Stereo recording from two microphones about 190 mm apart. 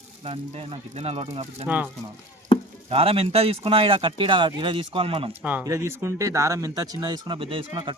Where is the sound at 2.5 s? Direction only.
30° left (ahead or behind).